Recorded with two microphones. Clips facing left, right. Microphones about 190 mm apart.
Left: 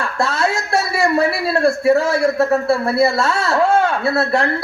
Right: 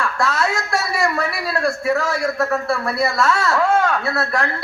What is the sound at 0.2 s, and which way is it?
A man's voice, 30° left (ahead or behind).